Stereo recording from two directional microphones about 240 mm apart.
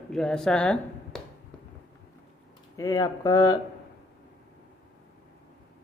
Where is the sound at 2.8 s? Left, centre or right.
Centre.